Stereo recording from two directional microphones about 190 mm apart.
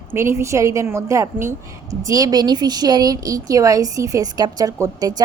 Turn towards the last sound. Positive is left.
turn(degrees=-20)  # may be behind; listen again after turning